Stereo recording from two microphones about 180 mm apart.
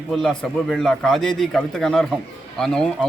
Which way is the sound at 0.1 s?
Centre (ahead or behind).